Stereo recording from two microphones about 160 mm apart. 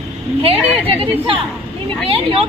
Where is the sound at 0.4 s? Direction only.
35° right (ahead or behind).